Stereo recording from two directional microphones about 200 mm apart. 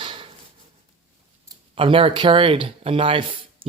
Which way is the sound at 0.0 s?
25° right (ahead or behind).